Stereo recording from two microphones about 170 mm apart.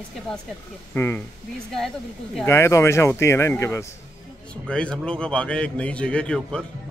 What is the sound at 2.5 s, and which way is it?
A man's voice, 15° left (ahead or behind).